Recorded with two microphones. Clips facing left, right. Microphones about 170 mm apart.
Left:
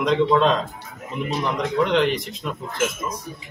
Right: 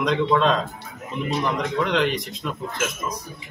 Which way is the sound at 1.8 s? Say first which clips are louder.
Left 4 dB; centre (ahead or behind).